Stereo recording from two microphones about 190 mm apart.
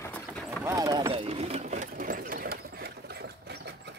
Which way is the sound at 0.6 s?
20° right (ahead or behind).